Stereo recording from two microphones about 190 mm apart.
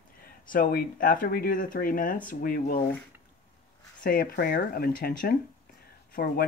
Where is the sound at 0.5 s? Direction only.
50° left (ahead or behind).